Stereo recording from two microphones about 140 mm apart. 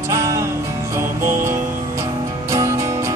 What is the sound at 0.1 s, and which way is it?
Music, 20° right (ahead or behind).